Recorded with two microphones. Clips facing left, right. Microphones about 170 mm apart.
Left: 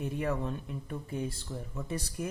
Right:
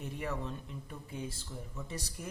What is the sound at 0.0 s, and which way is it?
A man's voice, 55° left (ahead or behind).